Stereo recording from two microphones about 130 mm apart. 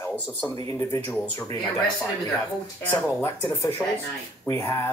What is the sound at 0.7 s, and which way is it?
Speech, 25° left (ahead or behind).